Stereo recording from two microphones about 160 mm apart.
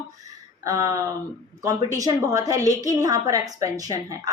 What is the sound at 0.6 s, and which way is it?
A woman's voice, 20° right (ahead or behind).